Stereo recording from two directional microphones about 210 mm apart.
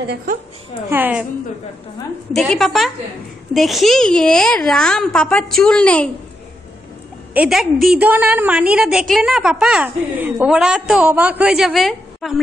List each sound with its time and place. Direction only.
0.0 s a woman's voice: 50° right (ahead or behind)
0.8 s a woman's voice: 10° right (ahead or behind)
2.3 s a woman's voice: centre (ahead or behind)
7.3 s a woman's voice: centre (ahead or behind)